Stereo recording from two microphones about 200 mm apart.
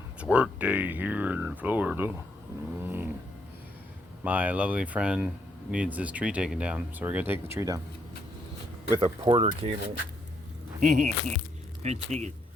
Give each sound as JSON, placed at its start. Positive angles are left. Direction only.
{"t": 0.2, "sound": "speech", "side_deg": -5}
{"t": 4.2, "sound": "speech", "side_deg": -5}
{"t": 9.0, "sound": "speech", "side_deg": -25}
{"t": 10.8, "sound": "speech", "side_deg": -40}